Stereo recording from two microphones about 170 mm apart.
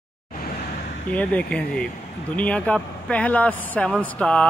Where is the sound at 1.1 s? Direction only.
10° left (ahead or behind).